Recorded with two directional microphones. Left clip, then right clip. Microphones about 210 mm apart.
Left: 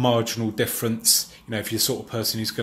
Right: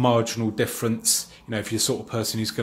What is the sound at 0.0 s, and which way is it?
Speech, 10° right (ahead or behind).